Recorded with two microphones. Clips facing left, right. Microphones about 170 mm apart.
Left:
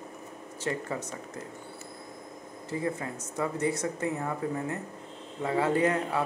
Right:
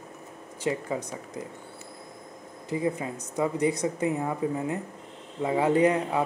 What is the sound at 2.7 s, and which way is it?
Speech, 15° right (ahead or behind).